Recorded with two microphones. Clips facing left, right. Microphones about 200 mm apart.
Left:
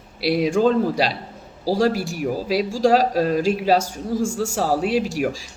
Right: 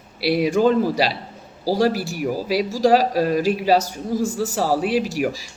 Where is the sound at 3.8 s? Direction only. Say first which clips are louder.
Even; 35° right (ahead or behind).